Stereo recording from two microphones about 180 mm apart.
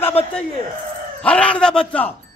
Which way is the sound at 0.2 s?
35° left (ahead or behind).